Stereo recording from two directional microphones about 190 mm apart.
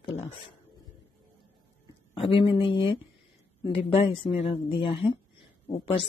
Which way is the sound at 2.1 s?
30° left (ahead or behind).